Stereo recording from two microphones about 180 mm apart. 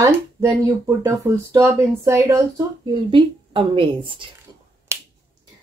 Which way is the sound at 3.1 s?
30° right (ahead or behind).